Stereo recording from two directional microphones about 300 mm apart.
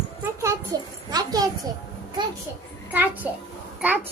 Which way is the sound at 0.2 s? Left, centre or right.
Centre.